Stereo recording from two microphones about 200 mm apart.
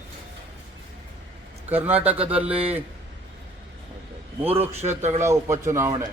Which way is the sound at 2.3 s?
5° right (ahead or behind).